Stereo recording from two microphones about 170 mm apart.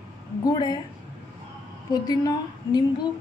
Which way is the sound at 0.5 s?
25° left (ahead or behind).